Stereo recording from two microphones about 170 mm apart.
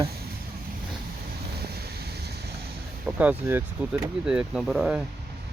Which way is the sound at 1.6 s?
70° right (ahead or behind).